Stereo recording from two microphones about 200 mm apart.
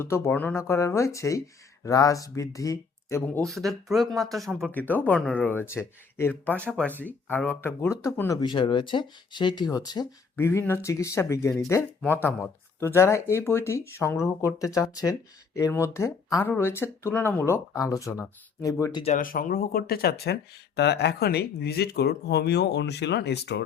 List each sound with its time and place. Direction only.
0.0 s speech: 10° left (ahead or behind)
19.0 s speech: 40° left (ahead or behind); by 23.6 s 55° left (ahead or behind)